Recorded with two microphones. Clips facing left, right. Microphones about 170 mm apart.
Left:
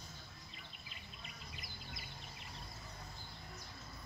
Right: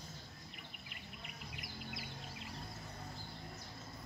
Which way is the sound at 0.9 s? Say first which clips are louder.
Right 3 dB; 70° right (ahead or behind).